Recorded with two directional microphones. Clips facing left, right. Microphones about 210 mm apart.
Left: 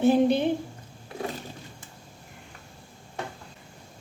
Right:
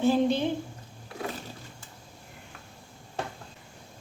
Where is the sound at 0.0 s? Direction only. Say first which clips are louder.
Left 3 dB; 15° left (ahead or behind).